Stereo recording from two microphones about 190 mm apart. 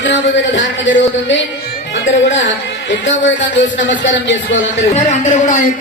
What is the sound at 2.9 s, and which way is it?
Speech, 75° left (ahead or behind).